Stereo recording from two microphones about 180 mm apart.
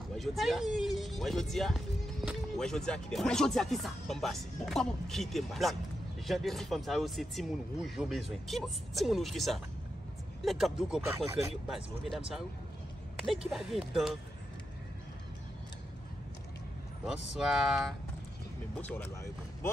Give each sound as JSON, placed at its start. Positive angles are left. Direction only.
{"t": 0.1, "sound": "speech", "side_deg": 0}
{"t": 13.5, "sound": "speech", "side_deg": 0}
{"t": 17.0, "sound": "speech", "side_deg": 0}